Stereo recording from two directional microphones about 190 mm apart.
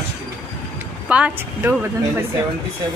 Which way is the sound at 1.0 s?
5° right (ahead or behind).